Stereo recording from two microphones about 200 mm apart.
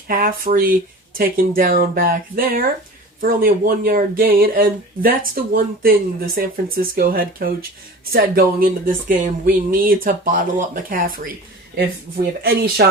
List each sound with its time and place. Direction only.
0.1 s speech: 45° right (ahead or behind)